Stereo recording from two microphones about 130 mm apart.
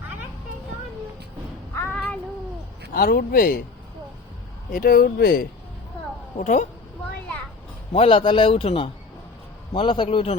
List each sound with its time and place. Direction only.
1.7 s child singing: 15° left (ahead or behind)
3.1 s speech: 90° left
4.8 s speech: 90° left
6.4 s speech: 70° left (ahead or behind)
7.9 s a man's voice: 45° left (ahead or behind)